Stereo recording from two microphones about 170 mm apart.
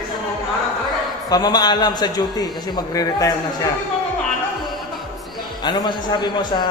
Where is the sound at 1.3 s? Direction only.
25° left (ahead or behind).